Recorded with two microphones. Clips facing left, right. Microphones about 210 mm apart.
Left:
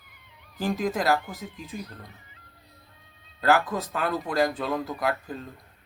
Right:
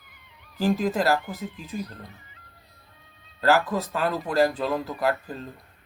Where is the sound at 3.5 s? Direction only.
Centre (ahead or behind).